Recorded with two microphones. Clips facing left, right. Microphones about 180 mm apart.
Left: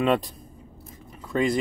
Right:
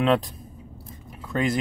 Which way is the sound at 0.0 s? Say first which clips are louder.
Right 1 dB; 5° left (ahead or behind).